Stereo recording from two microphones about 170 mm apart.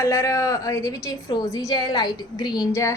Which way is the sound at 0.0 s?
15° left (ahead or behind).